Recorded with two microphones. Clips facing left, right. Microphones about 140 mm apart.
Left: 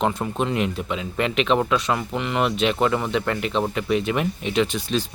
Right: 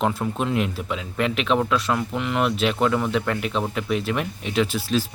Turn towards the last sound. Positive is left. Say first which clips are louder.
# even
turn(degrees=-5)  # may be behind; listen again after turning